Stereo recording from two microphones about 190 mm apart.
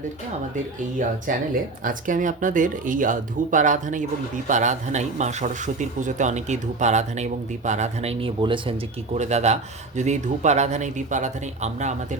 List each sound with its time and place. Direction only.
1.8 s a man's voice: 45° right (ahead or behind); by 8.7 s 25° right (ahead or behind)
9.1 s a man's voice: 35° right (ahead or behind)